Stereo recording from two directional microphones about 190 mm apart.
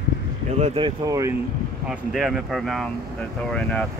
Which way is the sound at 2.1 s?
Centre (ahead or behind).